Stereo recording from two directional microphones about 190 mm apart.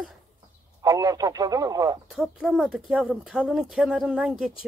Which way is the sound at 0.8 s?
20° right (ahead or behind).